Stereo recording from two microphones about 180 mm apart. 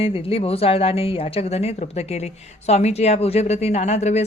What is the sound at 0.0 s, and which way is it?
Speech, 30° left (ahead or behind).